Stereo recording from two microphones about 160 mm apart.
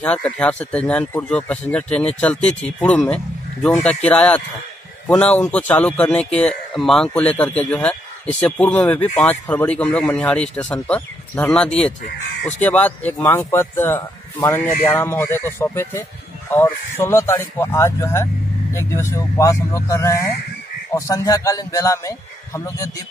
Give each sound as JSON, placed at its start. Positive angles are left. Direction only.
{"t": 0.0, "sound": "a man's voice", "side_deg": 10}